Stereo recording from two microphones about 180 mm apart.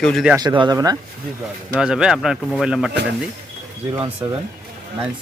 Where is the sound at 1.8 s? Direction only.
5° right (ahead or behind).